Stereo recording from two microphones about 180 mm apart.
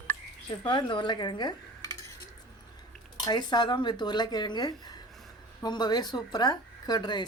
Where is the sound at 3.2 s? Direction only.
25° left (ahead or behind).